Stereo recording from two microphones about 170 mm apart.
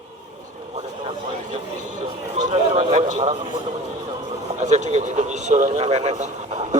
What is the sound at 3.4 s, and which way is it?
A man's voice, 25° right (ahead or behind).